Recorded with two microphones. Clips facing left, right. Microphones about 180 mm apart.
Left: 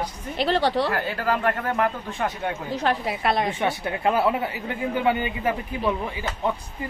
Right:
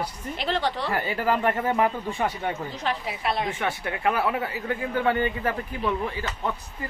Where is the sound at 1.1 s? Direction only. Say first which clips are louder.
Even; 10° right (ahead or behind).